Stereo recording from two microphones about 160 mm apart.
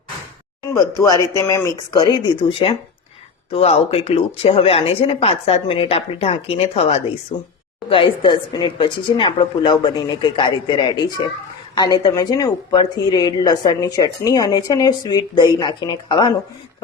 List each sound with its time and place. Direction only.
0.7 s speech: 20° left (ahead or behind)